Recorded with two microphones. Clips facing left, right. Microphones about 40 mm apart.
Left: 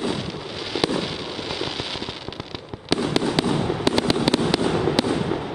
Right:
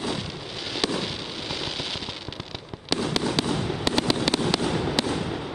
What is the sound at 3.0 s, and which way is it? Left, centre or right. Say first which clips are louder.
Fireworks: left 3 dB; centre.